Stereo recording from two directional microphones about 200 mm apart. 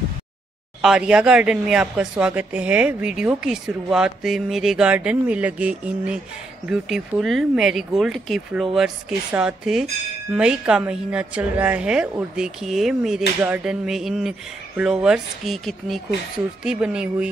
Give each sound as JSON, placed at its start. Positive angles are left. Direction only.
{"t": 0.8, "sound": "a woman's voice", "side_deg": -5}